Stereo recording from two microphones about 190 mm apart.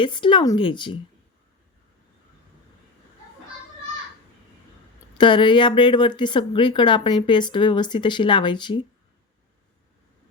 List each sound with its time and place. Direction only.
0.0 s speech: 25° left (ahead or behind)
5.1 s speech: 25° left (ahead or behind)